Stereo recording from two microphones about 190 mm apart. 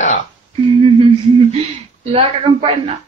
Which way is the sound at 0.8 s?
30° right (ahead or behind).